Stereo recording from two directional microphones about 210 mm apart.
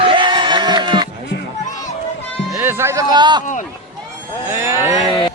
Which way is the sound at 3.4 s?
35° left (ahead or behind).